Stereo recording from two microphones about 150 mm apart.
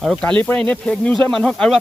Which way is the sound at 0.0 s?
5° left (ahead or behind).